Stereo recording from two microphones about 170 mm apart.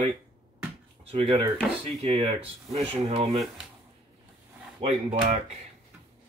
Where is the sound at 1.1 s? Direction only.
30° right (ahead or behind).